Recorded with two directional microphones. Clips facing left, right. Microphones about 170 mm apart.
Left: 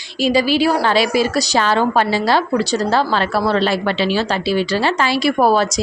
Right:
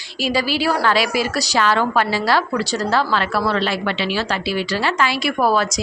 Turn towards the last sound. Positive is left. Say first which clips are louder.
# left 4 dB
turn(degrees=30)  # may be behind; listen again after turning